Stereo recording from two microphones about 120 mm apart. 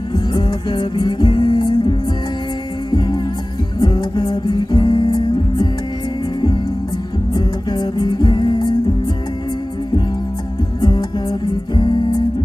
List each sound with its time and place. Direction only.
0.1 s music: 35° left (ahead or behind)
3.8 s music: 35° left (ahead or behind)
7.3 s music: 35° left (ahead or behind)
10.8 s music: 35° left (ahead or behind)